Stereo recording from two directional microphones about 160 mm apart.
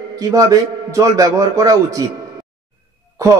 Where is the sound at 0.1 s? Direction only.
20° right (ahead or behind).